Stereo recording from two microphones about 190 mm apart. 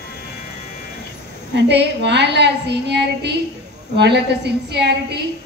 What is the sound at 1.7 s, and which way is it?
A woman's voice, 65° right (ahead or behind).